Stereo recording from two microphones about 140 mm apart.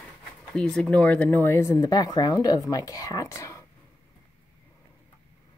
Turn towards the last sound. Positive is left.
turn(degrees=25)  # may be behind; listen again after turning